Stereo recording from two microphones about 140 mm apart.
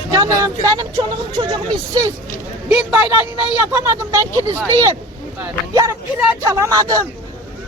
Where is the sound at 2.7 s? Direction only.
10° right (ahead or behind).